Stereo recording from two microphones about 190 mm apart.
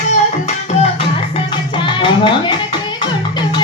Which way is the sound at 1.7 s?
25° left (ahead or behind).